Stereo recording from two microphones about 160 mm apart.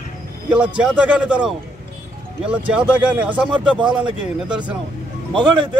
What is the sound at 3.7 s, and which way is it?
Speech, 30° right (ahead or behind).